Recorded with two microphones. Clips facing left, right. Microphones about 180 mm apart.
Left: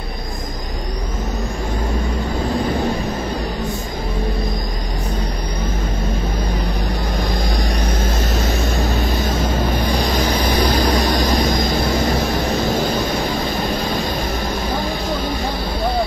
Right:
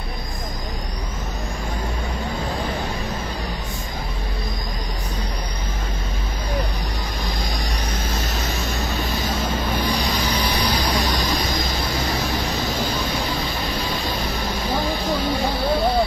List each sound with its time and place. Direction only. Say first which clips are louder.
7.5 s music: left 6 dB; 55° left (ahead or behind)
9.8 s vehicle: left 4 dB; 50° left (ahead or behind)